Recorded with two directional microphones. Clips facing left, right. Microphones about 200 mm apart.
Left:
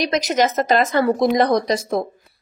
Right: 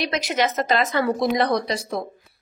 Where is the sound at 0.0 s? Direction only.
40° left (ahead or behind).